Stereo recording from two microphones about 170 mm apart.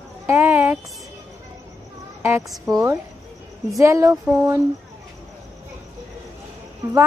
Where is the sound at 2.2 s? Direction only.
15° right (ahead or behind).